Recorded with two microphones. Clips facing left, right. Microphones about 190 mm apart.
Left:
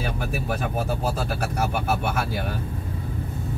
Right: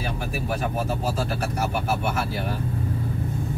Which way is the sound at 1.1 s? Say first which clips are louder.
Even; 55° left (ahead or behind).